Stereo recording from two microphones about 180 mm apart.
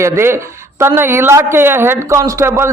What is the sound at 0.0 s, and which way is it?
A man's voice, 15° right (ahead or behind).